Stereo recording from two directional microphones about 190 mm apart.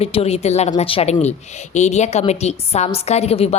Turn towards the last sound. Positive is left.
turn(degrees=35)  # may be behind; listen again after turning